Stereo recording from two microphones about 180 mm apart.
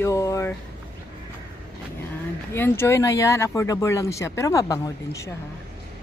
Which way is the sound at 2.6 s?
10° left (ahead or behind).